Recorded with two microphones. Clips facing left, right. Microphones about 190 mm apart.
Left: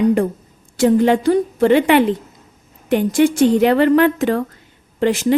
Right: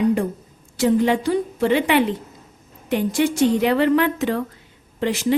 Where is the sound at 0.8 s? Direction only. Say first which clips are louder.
Left 4 dB; 50° left (ahead or behind).